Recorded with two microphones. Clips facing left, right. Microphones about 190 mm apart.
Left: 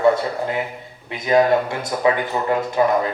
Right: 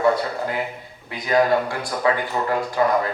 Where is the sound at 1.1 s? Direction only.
25° left (ahead or behind).